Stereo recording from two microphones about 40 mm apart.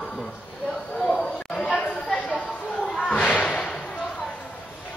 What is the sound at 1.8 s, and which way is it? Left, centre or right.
Chatter, left.